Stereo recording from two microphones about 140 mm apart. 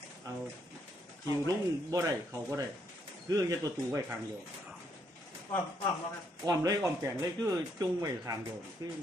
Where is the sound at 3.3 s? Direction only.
25° right (ahead or behind).